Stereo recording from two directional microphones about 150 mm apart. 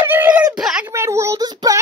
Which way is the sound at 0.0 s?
15° right (ahead or behind).